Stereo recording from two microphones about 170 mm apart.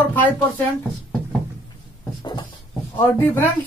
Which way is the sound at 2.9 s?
10° left (ahead or behind).